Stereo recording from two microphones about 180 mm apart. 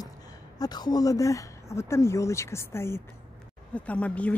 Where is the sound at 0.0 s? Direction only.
20° left (ahead or behind).